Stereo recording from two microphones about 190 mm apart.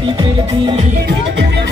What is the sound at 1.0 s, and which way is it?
Music, 60° right (ahead or behind).